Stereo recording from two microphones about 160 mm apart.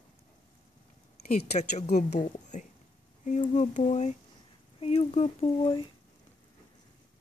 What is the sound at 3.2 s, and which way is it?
Speech, 50° left (ahead or behind).